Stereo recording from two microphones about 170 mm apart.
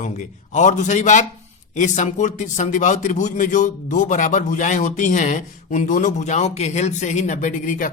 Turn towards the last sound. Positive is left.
turn(degrees=50)  # may be behind; listen again after turning